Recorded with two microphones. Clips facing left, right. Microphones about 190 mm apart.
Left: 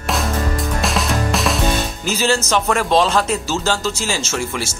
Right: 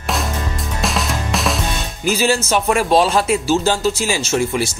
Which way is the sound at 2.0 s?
15° right (ahead or behind).